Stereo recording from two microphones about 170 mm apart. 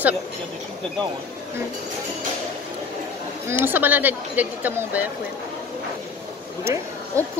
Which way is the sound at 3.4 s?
10° right (ahead or behind).